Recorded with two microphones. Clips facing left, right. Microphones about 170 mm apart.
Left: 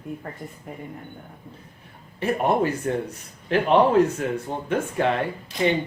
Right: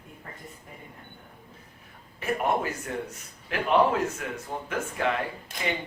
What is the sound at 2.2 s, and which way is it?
A man's voice, 30° left (ahead or behind).